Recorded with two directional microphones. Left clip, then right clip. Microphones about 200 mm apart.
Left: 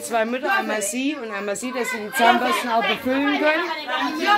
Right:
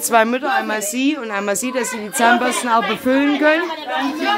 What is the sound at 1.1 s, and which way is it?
Speech, 30° right (ahead or behind).